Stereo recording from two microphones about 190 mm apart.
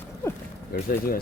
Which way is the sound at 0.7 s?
50° left (ahead or behind).